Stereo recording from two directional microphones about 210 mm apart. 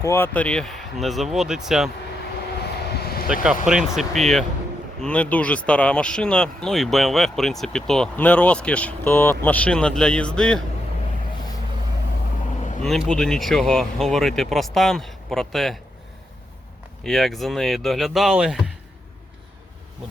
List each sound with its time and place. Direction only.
0.0 s speech: 10° left (ahead or behind)
2.6 s vehicle: 50° left (ahead or behind)
3.7 s speech: 5° right (ahead or behind)
12.8 s speech: centre (ahead or behind)
17.0 s speech: centre (ahead or behind)